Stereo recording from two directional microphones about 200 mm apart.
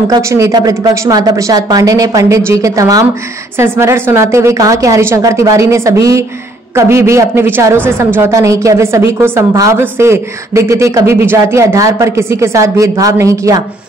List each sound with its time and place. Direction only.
0.1 s a woman's voice: 15° right (ahead or behind)